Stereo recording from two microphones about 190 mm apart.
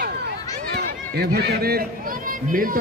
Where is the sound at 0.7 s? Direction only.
55° right (ahead or behind).